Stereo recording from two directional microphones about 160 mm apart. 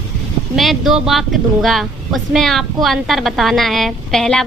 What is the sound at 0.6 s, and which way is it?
A woman's voice, centre (ahead or behind).